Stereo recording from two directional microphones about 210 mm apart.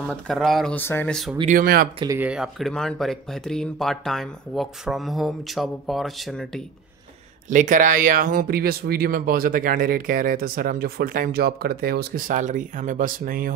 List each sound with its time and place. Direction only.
0.1 s speech: centre (ahead or behind)
1.4 s speech: 40° right (ahead or behind)
2.1 s speech: 5° right (ahead or behind)
7.4 s speech: 40° right (ahead or behind)